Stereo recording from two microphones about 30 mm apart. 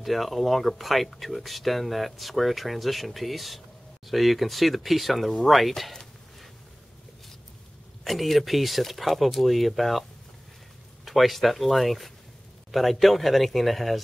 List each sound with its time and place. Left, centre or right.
0.0 s speech: centre
8.0 s speech: centre
11.1 s speech: centre